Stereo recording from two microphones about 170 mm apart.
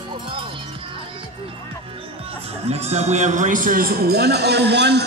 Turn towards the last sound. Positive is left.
turn(degrees=-80)